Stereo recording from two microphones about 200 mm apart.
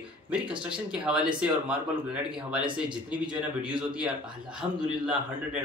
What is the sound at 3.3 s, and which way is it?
Speech, 25° right (ahead or behind).